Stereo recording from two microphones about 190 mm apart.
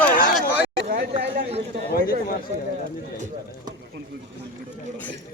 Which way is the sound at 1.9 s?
50° left (ahead or behind).